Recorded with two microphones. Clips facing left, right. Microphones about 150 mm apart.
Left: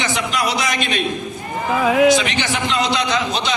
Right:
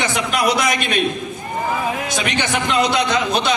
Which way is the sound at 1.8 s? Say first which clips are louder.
Left 10 dB; 90° left.